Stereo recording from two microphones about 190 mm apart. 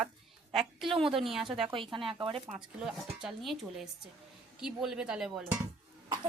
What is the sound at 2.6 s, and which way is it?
Speech, 5° right (ahead or behind).